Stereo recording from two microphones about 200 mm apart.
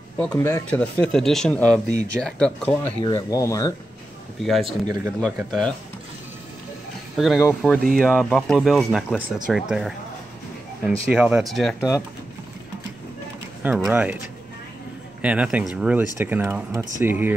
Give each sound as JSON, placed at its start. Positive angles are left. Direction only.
{"t": 0.2, "sound": "speech", "side_deg": 10}
{"t": 3.0, "sound": "speech", "side_deg": 20}
{"t": 4.5, "sound": "speech", "side_deg": 0}
{"t": 7.2, "sound": "speech", "side_deg": 0}
{"t": 7.4, "sound": "speech", "side_deg": 10}
{"t": 11.1, "sound": "speech", "side_deg": -5}
{"t": 13.7, "sound": "speech", "side_deg": -5}
{"t": 15.2, "sound": "speech", "side_deg": -5}